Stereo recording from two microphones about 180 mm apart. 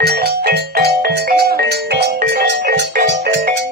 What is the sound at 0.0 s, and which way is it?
Music, 65° right (ahead or behind).